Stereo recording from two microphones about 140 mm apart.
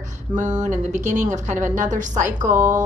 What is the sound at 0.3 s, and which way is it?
A woman's voice, 60° right (ahead or behind).